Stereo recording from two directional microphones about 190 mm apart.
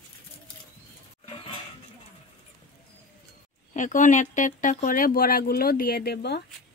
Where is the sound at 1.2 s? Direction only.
30° left (ahead or behind).